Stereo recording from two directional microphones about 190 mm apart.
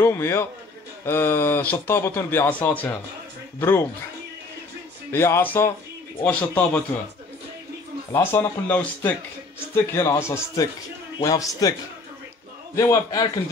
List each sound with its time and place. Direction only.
0.0 s speech: 15° left (ahead or behind)
5.1 s speech: 15° left (ahead or behind)
8.1 s a man's voice: 10° left (ahead or behind)
12.7 s speech: 15° left (ahead or behind)